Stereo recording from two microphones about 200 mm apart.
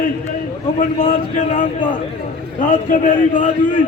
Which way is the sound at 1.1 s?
40° left (ahead or behind).